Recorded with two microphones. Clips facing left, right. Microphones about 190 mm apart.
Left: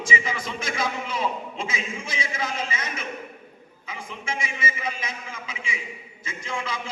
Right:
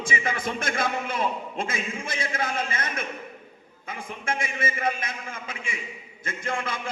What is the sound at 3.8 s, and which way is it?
A man's voice, 55° right (ahead or behind).